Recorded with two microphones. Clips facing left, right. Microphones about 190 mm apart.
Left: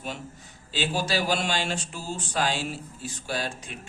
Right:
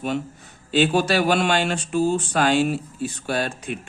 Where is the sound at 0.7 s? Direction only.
60° right (ahead or behind).